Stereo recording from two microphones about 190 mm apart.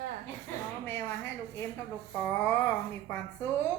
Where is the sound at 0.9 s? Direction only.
10° left (ahead or behind).